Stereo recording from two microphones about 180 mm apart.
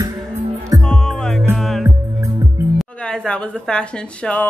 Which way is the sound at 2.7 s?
5° left (ahead or behind).